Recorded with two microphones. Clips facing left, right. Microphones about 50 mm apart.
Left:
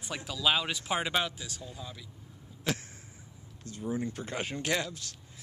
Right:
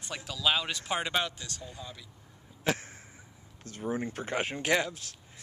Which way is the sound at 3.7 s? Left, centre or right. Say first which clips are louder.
Right 1 dB; right.